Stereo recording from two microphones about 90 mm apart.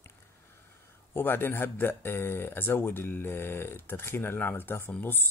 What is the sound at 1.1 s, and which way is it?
Speech, 25° left (ahead or behind).